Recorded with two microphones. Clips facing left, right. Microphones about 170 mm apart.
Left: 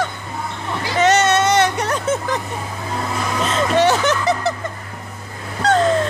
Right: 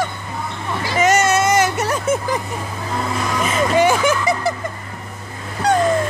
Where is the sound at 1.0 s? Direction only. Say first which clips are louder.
Left 1 dB; 10° right (ahead or behind).